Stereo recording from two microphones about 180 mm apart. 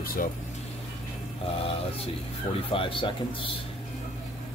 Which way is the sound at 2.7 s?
30° left (ahead or behind).